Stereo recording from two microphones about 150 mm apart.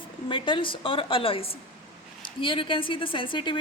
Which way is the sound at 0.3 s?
35° left (ahead or behind).